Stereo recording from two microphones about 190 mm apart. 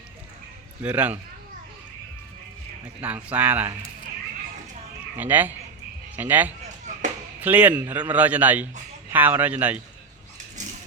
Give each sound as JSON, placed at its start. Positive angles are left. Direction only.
{"t": 0.8, "sound": "a man's voice", "side_deg": -10}
{"t": 2.8, "sound": "a man's voice", "side_deg": -10}
{"t": 5.1, "sound": "a man's voice", "side_deg": -10}
{"t": 10.6, "sound": "a sound", "side_deg": -40}